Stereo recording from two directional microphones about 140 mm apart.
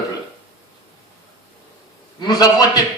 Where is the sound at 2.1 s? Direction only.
30° left (ahead or behind).